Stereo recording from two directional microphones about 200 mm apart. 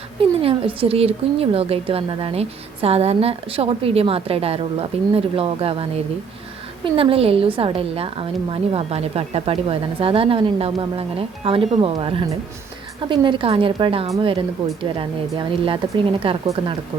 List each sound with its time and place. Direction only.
0.2 s speech: 25° right (ahead or behind)